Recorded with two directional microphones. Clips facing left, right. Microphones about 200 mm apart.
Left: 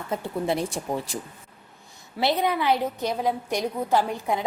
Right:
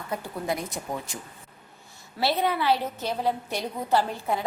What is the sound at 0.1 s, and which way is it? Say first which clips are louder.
A woman's voice: left 4 dB; 25° left (ahead or behind).